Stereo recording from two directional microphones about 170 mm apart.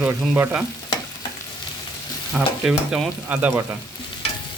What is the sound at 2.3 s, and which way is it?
Speech, 5° right (ahead or behind).